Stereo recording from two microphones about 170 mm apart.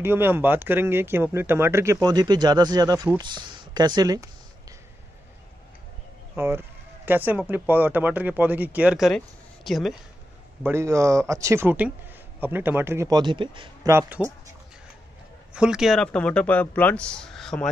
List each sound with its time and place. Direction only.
0.0 s speech: 15° right (ahead or behind)
3.2 s a sound: 25° right (ahead or behind)
6.3 s speech: 15° right (ahead or behind)
10.6 s speech: 15° right (ahead or behind)
13.8 s speech: 10° right (ahead or behind)
15.5 s speech: 5° right (ahead or behind)